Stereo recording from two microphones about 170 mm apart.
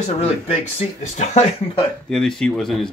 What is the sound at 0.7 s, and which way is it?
Speech, 40° left (ahead or behind).